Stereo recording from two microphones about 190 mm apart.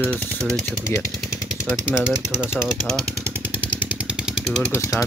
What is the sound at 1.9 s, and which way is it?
Speech, 5° right (ahead or behind).